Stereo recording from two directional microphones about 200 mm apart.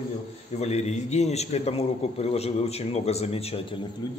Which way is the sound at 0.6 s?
35° left (ahead or behind).